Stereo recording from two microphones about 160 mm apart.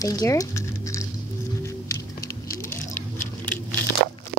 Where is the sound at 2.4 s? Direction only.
15° left (ahead or behind).